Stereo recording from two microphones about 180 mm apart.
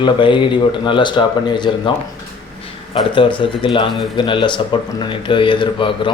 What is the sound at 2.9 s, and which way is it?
Speech, 30° left (ahead or behind).